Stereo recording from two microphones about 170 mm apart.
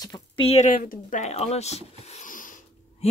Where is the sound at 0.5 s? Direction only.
45° left (ahead or behind).